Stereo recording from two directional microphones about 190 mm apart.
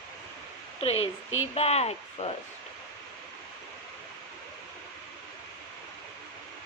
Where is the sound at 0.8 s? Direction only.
30° left (ahead or behind).